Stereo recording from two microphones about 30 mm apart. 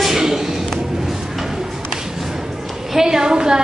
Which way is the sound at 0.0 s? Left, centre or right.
Centre.